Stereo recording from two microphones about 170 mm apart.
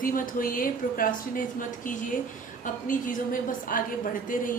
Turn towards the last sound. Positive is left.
turn(degrees=50)  # may be behind; listen again after turning